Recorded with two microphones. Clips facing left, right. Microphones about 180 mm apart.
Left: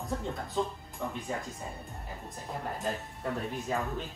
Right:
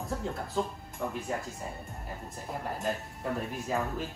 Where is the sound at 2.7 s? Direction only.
Centre (ahead or behind).